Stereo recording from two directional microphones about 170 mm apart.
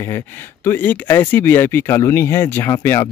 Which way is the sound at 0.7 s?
10° left (ahead or behind).